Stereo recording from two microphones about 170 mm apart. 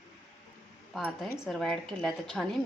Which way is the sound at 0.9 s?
5° right (ahead or behind).